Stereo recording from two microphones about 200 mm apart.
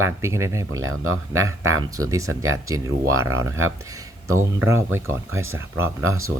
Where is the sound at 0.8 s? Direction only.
90° right.